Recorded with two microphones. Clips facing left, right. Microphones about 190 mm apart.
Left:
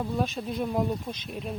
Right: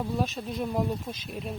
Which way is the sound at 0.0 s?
Centre (ahead or behind).